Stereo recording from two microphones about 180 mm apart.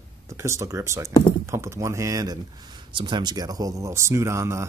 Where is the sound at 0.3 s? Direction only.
15° right (ahead or behind).